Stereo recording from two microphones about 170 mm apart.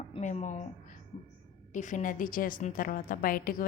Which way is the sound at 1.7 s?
50° left (ahead or behind).